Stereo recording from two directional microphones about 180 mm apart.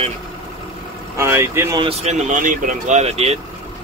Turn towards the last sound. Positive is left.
turn(degrees=-35)  # may be behind; listen again after turning